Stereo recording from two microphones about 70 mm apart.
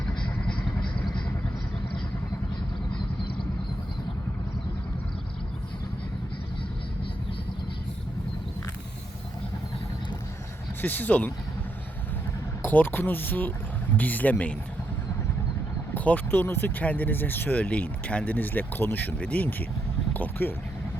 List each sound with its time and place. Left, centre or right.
0.4 s vehicle: centre
10.8 s speech: left
12.6 s speech: left
16.0 s speech: left